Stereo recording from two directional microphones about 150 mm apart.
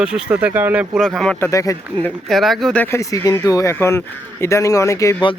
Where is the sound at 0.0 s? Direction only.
10° right (ahead or behind).